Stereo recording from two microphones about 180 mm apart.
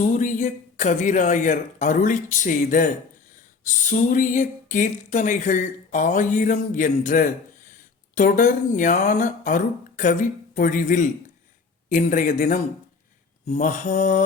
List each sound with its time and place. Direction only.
0.0 s speech: 45° left (ahead or behind)